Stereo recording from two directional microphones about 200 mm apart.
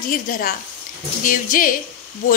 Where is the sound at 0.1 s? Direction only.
45° left (ahead or behind).